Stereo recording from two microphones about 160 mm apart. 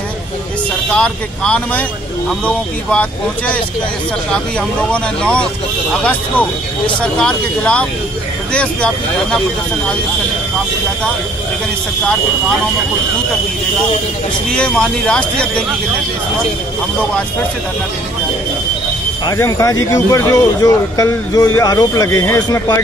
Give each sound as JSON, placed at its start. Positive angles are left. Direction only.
{"t": 0.9, "sound": "speech", "side_deg": 5}
{"t": 7.0, "sound": "speech", "side_deg": 5}
{"t": 14.5, "sound": "speech", "side_deg": 5}
{"t": 19.2, "sound": "speech", "side_deg": 20}